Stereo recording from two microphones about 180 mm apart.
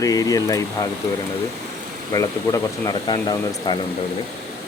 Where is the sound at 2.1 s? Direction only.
20° left (ahead or behind).